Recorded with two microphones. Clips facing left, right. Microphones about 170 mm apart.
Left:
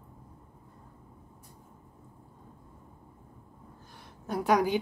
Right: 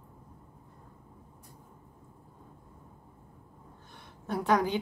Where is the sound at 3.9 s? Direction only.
5° left (ahead or behind).